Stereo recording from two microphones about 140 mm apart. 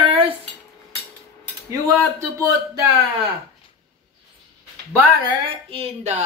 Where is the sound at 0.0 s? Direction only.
40° right (ahead or behind).